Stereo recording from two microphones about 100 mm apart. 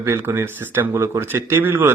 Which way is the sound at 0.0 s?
25° right (ahead or behind).